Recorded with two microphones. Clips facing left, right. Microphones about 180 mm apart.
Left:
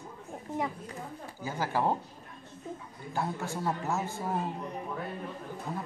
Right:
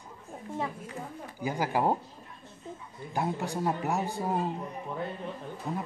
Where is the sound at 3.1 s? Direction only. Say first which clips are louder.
Right 3 dB; 15° right (ahead or behind).